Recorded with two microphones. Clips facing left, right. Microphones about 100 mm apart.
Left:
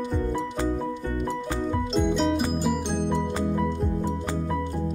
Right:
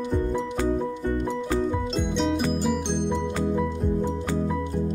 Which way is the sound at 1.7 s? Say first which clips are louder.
Left 2 dB; centre (ahead or behind).